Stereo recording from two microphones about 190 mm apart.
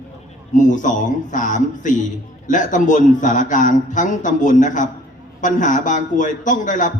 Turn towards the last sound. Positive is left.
turn(degrees=40)  # may be behind; listen again after turning